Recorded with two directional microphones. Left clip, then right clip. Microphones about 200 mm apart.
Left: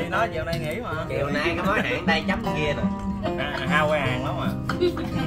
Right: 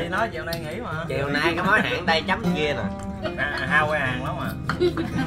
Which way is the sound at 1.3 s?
45° right (ahead or behind).